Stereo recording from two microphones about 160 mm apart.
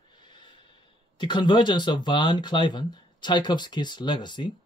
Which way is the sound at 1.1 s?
30° left (ahead or behind).